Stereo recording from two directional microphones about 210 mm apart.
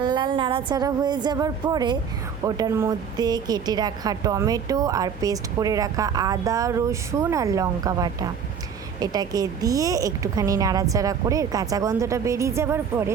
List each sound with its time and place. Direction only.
0.0 s speech: 20° right (ahead or behind)